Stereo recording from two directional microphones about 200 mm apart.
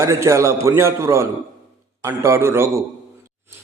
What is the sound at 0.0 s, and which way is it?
Speech, 15° right (ahead or behind).